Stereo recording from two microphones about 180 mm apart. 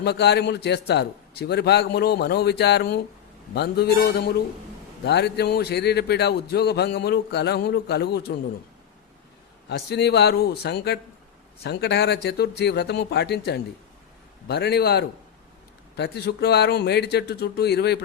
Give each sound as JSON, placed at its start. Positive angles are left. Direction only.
{"t": 0.0, "sound": "a man's voice", "side_deg": 65}
{"t": 9.6, "sound": "a man's voice", "side_deg": 65}